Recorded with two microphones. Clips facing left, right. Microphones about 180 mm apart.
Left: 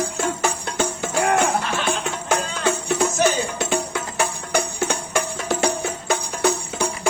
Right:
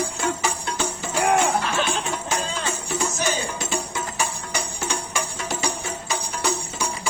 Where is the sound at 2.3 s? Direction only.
60° left (ahead or behind).